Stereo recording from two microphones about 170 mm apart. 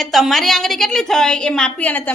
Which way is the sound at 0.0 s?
Centre (ahead or behind).